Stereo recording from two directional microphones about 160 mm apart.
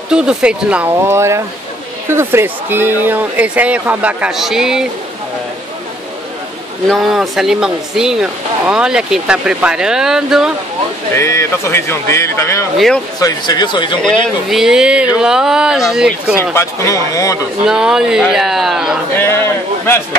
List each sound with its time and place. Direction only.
0.1 s speech: 5° right (ahead or behind)
6.9 s speech: centre (ahead or behind)
11.1 s speech: 15° left (ahead or behind)
12.7 s speech: centre (ahead or behind)
13.2 s a man's voice: 25° left (ahead or behind)
14.0 s speech: centre (ahead or behind)
16.5 s a man's voice: 20° left (ahead or behind)
17.6 s speech: 5° right (ahead or behind)
19.1 s speech: 15° left (ahead or behind)